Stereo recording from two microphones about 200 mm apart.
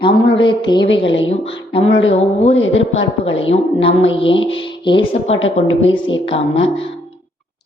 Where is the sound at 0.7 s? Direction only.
25° left (ahead or behind).